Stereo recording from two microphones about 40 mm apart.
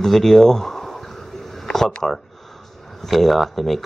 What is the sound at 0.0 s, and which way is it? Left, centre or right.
Speech, centre.